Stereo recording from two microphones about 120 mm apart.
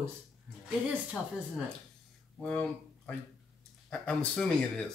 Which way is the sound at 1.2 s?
5° left (ahead or behind).